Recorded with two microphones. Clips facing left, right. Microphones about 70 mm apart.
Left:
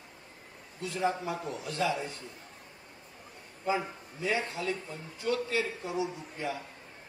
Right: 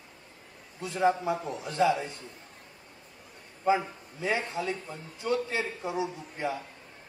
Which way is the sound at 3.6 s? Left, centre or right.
Right.